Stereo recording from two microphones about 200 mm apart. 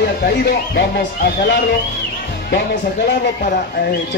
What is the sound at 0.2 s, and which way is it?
Speech, 55° left (ahead or behind).